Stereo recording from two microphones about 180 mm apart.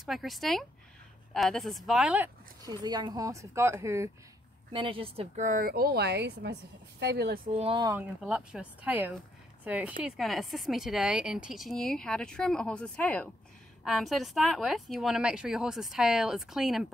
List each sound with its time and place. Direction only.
0.0 s speech: centre (ahead or behind)
2.6 s speech: 25° right (ahead or behind)
4.7 s speech: 30° right (ahead or behind); by 7.3 s 65° right (ahead or behind)
7.4 s speech: 35° right (ahead or behind)
7.9 s speech: 10° right (ahead or behind)